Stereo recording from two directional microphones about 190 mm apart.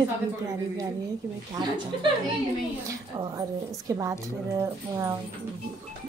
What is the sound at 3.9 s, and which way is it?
A woman's voice, 20° right (ahead or behind).